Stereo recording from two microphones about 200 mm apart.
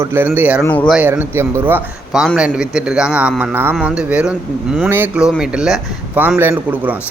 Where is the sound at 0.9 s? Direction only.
10° right (ahead or behind).